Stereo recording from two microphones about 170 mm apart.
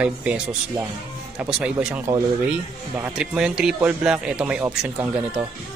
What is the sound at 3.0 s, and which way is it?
A man's voice, 5° right (ahead or behind).